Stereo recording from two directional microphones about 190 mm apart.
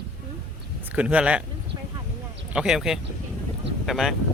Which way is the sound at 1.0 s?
5° right (ahead or behind).